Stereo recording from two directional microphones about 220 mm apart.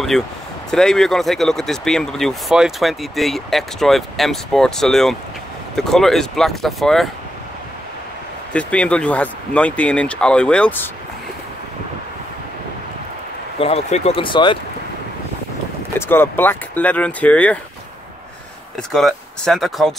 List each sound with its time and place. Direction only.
0.1 s speech: centre (ahead or behind)
8.5 s speech: 5° left (ahead or behind)
13.6 s speech: 25° left (ahead or behind)
16.1 s speech: 10° left (ahead or behind)
18.8 s speech: centre (ahead or behind)